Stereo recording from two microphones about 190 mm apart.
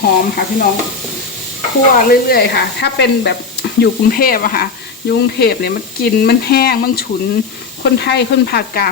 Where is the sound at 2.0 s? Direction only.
55° left (ahead or behind).